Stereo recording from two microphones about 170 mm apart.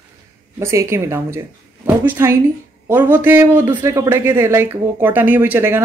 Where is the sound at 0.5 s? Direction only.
15° right (ahead or behind).